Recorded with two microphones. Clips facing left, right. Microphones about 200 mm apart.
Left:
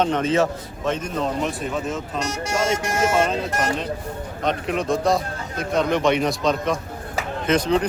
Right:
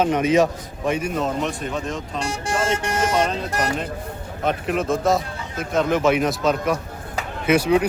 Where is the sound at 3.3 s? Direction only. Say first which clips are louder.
Left 1 dB; centre (ahead or behind).